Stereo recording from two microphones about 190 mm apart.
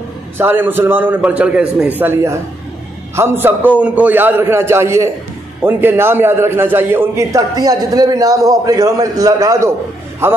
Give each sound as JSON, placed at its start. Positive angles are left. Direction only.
{"t": 0.4, "sound": "a man's voice", "side_deg": -10}